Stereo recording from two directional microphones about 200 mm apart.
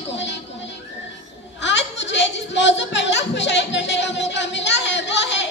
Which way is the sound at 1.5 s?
65° left (ahead or behind).